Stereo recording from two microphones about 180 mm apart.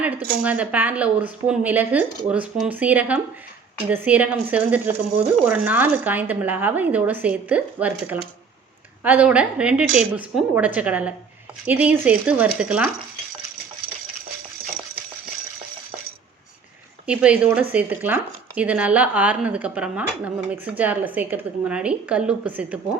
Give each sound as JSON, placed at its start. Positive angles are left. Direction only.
{"t": 0.0, "sound": "speech", "side_deg": -10}
{"t": 17.1, "sound": "speech", "side_deg": -5}